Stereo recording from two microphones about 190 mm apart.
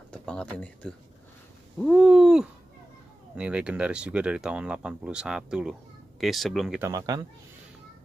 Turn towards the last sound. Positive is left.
turn(degrees=-20)  # may be behind; listen again after turning